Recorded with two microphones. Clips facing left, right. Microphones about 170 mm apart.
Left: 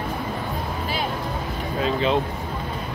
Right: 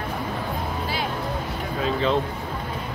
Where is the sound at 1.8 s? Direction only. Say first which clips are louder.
Left 1 dB; 15° left (ahead or behind).